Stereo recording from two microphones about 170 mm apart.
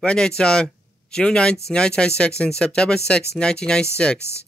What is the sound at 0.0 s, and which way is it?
Speech, 5° left (ahead or behind).